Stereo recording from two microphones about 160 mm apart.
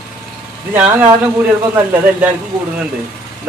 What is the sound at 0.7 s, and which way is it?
Speech, 10° right (ahead or behind).